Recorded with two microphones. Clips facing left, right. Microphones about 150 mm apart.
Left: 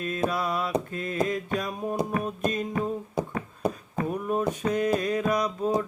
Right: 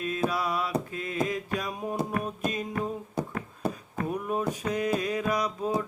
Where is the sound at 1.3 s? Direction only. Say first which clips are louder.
Left 2 dB; 5° right (ahead or behind).